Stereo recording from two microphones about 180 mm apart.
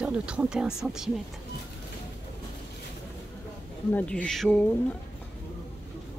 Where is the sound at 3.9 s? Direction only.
5° left (ahead or behind).